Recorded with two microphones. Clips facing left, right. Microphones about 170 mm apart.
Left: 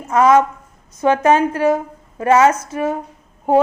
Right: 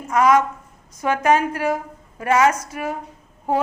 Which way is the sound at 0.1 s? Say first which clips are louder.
Left 4 dB; 25° left (ahead or behind).